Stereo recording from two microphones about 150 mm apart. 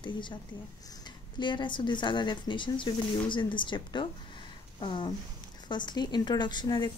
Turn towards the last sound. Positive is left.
turn(degrees=30)  # may be behind; listen again after turning